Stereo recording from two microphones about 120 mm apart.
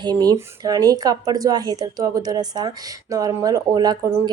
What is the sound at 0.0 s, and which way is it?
Speech, 35° right (ahead or behind).